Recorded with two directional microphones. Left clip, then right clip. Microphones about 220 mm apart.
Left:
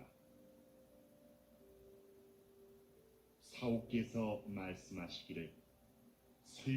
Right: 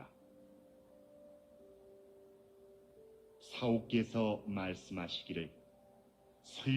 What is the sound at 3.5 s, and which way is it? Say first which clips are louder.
Speech: right 6 dB; 20° right (ahead or behind).